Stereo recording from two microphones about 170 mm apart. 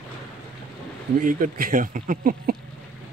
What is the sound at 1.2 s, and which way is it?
Speech, 55° right (ahead or behind).